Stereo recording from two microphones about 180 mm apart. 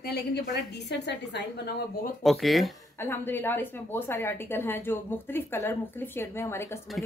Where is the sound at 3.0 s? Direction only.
10° left (ahead or behind).